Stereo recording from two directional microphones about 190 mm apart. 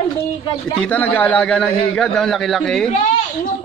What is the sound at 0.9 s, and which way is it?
A man's voice, 10° left (ahead or behind).